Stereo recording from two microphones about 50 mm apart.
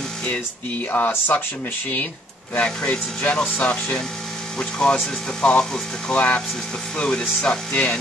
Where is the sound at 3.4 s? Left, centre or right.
Left.